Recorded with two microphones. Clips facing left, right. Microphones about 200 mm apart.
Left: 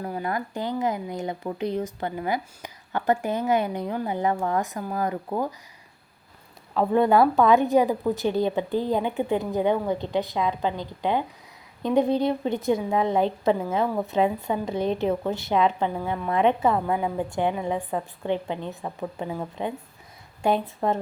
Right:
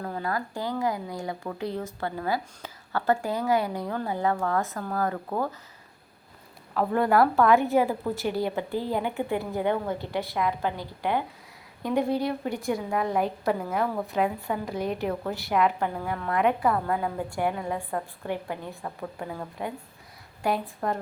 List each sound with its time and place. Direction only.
0.0 s speech: 20° left (ahead or behind)
6.7 s speech: 20° left (ahead or behind)